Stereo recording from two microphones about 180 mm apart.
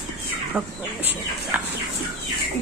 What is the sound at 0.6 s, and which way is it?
Speech, 5° right (ahead or behind).